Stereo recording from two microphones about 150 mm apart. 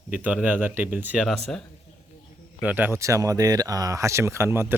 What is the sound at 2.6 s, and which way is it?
Speech, 10° right (ahead or behind).